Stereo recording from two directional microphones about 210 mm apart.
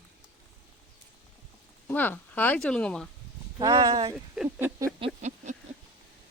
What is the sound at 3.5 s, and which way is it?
Speech, 20° right (ahead or behind).